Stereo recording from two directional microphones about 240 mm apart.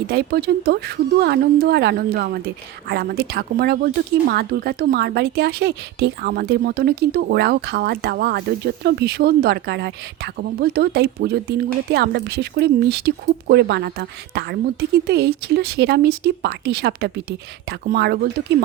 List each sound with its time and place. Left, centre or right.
0.1 s speech: right